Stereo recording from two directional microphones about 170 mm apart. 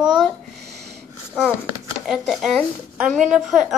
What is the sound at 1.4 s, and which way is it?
Speech, centre (ahead or behind).